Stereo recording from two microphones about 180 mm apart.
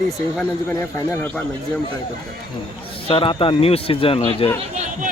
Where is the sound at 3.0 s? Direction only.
30° left (ahead or behind).